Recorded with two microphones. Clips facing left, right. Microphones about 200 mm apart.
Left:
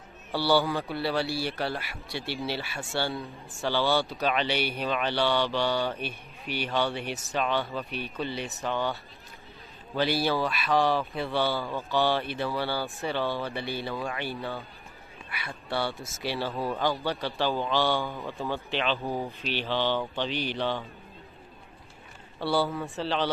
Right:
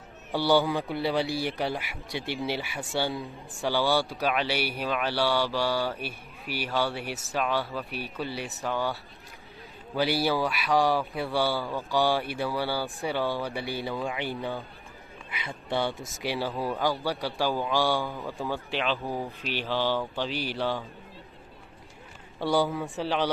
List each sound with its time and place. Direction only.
0.3 s speech: 15° right (ahead or behind)
9.9 s speech: 10° right (ahead or behind)
22.4 s speech: 15° right (ahead or behind)
22.7 s speech: centre (ahead or behind)
22.9 s speech: 10° right (ahead or behind)